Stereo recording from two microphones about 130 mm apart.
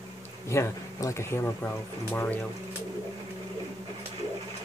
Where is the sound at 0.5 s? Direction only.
20° left (ahead or behind).